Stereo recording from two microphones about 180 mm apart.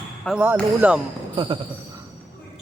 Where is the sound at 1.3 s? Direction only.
25° right (ahead or behind).